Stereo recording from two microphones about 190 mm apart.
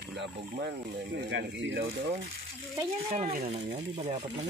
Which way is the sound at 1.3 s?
70° right (ahead or behind).